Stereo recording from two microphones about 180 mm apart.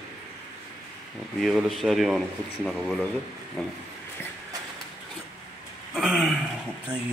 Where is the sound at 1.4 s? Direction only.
Centre (ahead or behind).